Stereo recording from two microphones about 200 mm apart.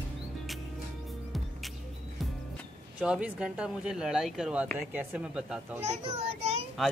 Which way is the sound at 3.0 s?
5° right (ahead or behind).